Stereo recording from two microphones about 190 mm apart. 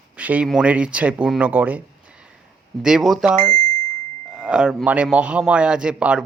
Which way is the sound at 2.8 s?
5° right (ahead or behind).